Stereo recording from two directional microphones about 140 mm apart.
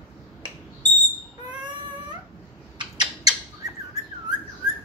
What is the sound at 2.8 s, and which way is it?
Bird, 30° right (ahead or behind).